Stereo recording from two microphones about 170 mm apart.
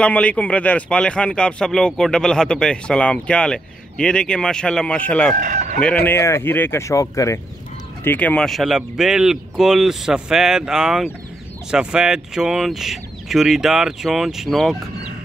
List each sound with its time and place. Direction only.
0.0 s speech: 5° left (ahead or behind)
5.3 s speech: 50° right (ahead or behind)
5.8 s speech: 10° left (ahead or behind)